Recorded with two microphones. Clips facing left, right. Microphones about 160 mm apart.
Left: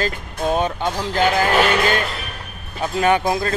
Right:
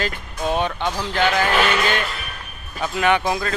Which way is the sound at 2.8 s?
25° left (ahead or behind).